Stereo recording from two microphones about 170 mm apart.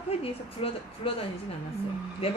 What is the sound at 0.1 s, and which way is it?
A woman's voice, 35° left (ahead or behind).